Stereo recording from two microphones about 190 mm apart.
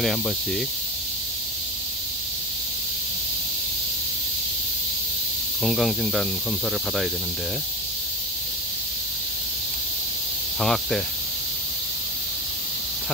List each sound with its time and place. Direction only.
0.0 s speech: centre (ahead or behind)
5.6 s speech: centre (ahead or behind)
10.6 s speech: centre (ahead or behind)